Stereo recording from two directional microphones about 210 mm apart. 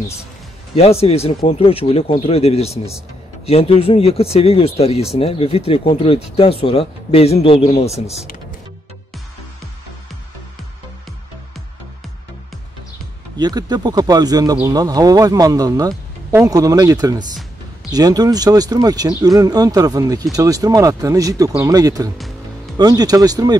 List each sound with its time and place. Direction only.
0.7 s speech: 30° left (ahead or behind)
13.4 s speech: 20° right (ahead or behind)